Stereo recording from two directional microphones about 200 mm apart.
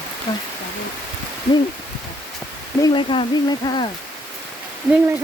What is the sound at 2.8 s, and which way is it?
Speech, 20° left (ahead or behind).